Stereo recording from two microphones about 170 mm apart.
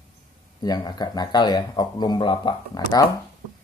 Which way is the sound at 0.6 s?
25° left (ahead or behind).